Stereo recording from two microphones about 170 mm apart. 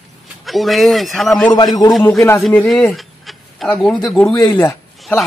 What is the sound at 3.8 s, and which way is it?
Speech, 5° left (ahead or behind).